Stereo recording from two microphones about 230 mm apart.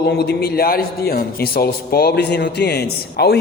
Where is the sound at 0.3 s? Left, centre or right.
Left.